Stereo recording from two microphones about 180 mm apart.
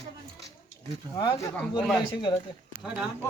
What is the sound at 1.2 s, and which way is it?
Speech, 20° left (ahead or behind).